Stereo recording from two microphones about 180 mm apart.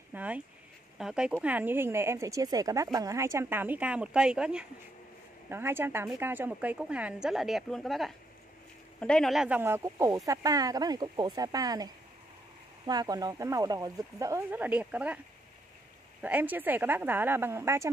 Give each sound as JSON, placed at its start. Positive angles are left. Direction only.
{"t": 0.1, "sound": "a sound", "side_deg": -10}
{"t": 0.9, "sound": "speech", "side_deg": -5}
{"t": 16.2, "sound": "speech", "side_deg": -10}